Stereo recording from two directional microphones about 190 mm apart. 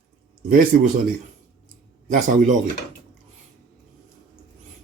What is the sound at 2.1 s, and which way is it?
Speech, 40° right (ahead or behind).